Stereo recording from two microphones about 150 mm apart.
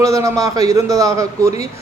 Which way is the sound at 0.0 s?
20° right (ahead or behind).